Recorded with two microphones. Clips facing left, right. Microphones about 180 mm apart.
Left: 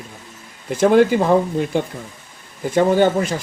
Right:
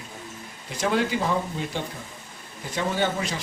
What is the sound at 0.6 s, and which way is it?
Speech, 50° left (ahead or behind).